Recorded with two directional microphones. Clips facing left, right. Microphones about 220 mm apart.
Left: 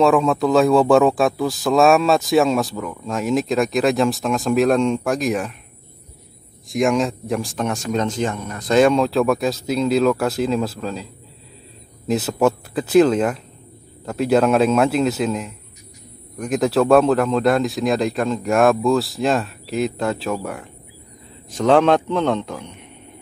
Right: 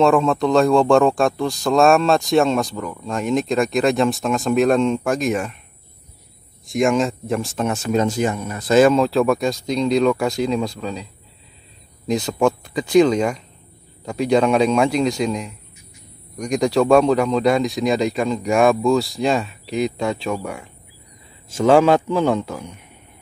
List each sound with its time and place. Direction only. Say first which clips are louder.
0.0 s speech: even; centre (ahead or behind)
6.7 s speech: right 1 dB; centre (ahead or behind)
12.1 s a man's voice: left 1 dB; 5° left (ahead or behind)